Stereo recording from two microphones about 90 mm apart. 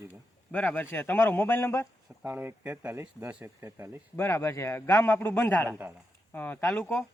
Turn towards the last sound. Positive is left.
turn(degrees=20)  # may be behind; listen again after turning